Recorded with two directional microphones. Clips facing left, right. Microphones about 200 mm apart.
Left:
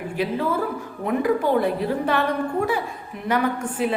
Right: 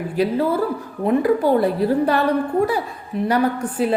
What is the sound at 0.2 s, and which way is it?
A woman's voice, 40° right (ahead or behind).